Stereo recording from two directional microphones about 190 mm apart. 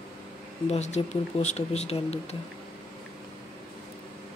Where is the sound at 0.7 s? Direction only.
35° left (ahead or behind).